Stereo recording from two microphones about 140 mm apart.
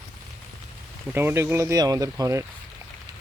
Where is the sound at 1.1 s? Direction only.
15° right (ahead or behind).